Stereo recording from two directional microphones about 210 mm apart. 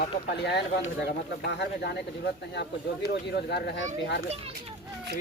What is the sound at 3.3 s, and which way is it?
Speech, 50° left (ahead or behind).